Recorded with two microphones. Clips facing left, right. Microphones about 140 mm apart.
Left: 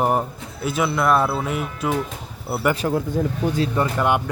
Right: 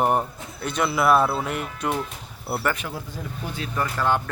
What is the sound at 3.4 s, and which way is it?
Speech, 90° left.